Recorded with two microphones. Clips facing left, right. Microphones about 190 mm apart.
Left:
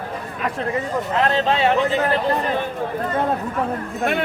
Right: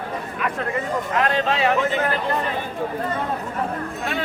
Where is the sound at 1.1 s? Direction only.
25° left (ahead or behind).